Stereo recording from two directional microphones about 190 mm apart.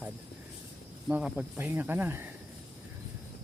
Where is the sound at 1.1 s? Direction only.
10° right (ahead or behind).